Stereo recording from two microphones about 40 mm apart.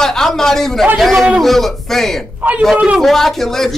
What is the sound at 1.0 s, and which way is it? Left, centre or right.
Speech, centre.